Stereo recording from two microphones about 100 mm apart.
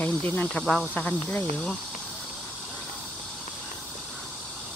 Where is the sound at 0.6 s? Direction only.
5° left (ahead or behind).